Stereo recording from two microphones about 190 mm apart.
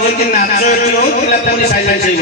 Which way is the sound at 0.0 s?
55° left (ahead or behind).